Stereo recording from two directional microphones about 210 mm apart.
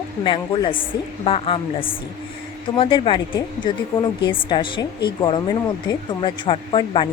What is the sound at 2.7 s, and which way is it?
A woman's voice, 25° left (ahead or behind).